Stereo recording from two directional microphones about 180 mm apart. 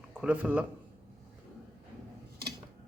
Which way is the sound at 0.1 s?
5° right (ahead or behind).